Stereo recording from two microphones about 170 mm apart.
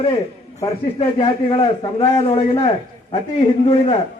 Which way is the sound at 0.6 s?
30° left (ahead or behind).